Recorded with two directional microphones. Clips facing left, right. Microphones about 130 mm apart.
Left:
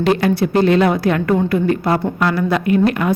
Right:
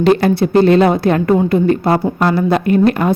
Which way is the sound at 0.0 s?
30° right (ahead or behind).